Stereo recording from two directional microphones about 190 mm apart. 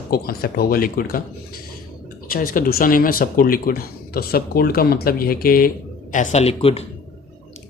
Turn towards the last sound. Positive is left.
turn(degrees=30)  # may be behind; listen again after turning